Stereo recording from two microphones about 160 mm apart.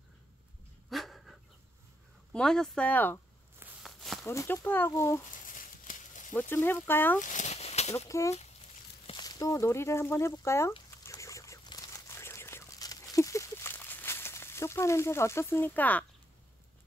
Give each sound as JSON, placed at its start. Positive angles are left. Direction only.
{"t": 0.8, "sound": "dog", "side_deg": 0}
{"t": 2.3, "sound": "speech", "side_deg": 5}
{"t": 3.8, "sound": "walk", "side_deg": 0}
{"t": 4.3, "sound": "speech", "side_deg": 20}
{"t": 5.5, "sound": "a sound", "side_deg": 55}
{"t": 6.5, "sound": "speech", "side_deg": 15}
{"t": 7.2, "sound": "a sound", "side_deg": 50}
{"t": 7.9, "sound": "speech", "side_deg": 20}
{"t": 11.1, "sound": "a sound", "side_deg": 20}